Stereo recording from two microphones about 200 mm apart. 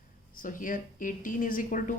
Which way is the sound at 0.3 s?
40° left (ahead or behind).